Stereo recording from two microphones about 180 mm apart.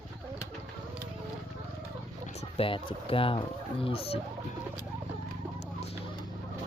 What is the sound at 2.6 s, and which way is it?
Speech, 30° left (ahead or behind).